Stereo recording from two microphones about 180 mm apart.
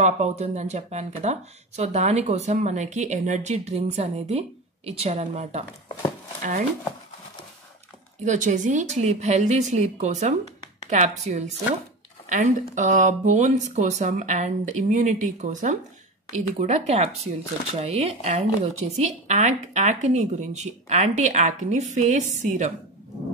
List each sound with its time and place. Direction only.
0.0 s speech: 40° right (ahead or behind)
8.3 s speech: 45° right (ahead or behind)